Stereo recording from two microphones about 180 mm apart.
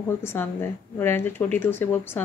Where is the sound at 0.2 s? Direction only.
15° left (ahead or behind).